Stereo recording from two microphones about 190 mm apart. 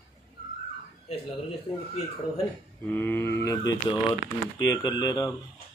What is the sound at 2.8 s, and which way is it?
Speech, 10° left (ahead or behind).